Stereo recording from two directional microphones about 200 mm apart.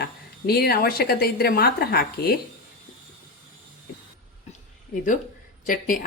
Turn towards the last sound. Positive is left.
turn(degrees=45)  # may be behind; listen again after turning